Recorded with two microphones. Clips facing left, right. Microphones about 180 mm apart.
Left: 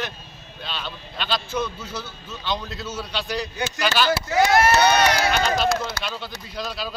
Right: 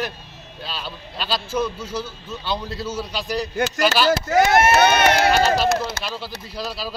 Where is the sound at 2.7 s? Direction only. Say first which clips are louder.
Right 4 dB; 30° right (ahead or behind).